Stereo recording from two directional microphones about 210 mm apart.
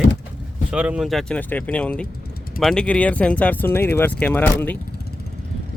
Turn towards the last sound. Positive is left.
turn(degrees=10)  # may be behind; listen again after turning